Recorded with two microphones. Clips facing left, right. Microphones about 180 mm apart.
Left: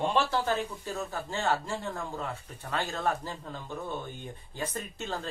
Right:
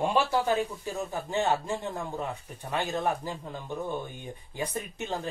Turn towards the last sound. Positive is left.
turn(degrees=-15)  # may be behind; listen again after turning